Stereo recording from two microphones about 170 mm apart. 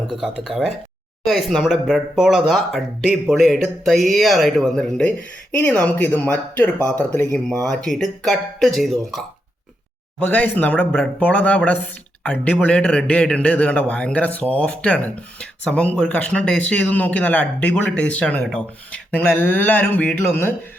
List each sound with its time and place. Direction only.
0.1 s speech: 5° right (ahead or behind)